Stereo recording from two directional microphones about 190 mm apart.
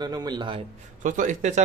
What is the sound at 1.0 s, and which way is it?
Speech, 45° right (ahead or behind).